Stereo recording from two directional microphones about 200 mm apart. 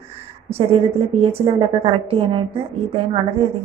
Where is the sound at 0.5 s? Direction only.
30° right (ahead or behind).